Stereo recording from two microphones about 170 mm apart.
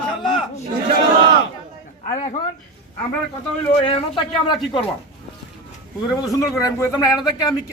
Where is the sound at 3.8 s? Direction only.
30° left (ahead or behind).